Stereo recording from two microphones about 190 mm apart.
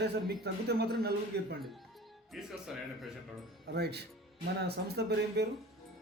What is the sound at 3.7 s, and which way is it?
Speech, 60° right (ahead or behind).